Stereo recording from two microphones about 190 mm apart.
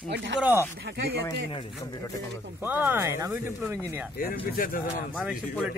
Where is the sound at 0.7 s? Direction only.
60° right (ahead or behind).